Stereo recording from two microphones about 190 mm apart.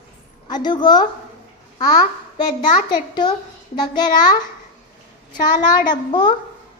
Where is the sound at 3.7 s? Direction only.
20° left (ahead or behind).